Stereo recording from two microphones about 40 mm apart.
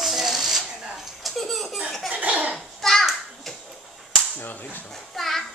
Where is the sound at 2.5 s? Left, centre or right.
Centre.